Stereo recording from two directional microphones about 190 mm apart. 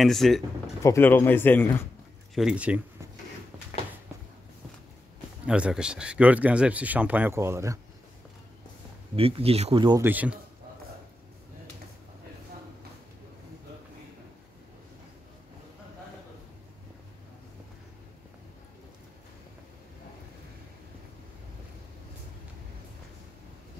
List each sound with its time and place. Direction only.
0.0 s speech: centre (ahead or behind)
0.8 s speech: 10° left (ahead or behind)
2.3 s speech: 5° right (ahead or behind)
5.5 s speech: 5° right (ahead or behind)
9.1 s speech: 30° right (ahead or behind)
10.0 s speech: 10° right (ahead or behind)